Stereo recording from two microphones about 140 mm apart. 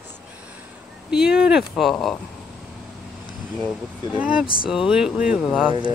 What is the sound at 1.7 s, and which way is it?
Speech, centre (ahead or behind).